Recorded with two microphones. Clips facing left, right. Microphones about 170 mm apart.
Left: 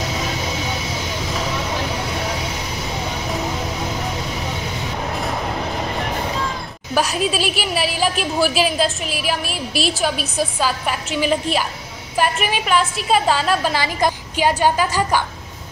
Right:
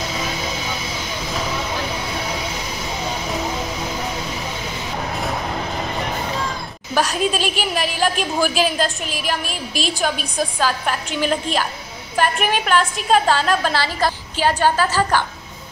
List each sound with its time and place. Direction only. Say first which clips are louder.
6.9 s a sound: even; 5° left (ahead or behind)
7.7 s a woman's voice: left 1 dB; 5° left (ahead or behind)
9.5 s a woman's voice: left 2 dB; 40° right (ahead or behind)
10.3 s a woman's voice: even; 5° left (ahead or behind)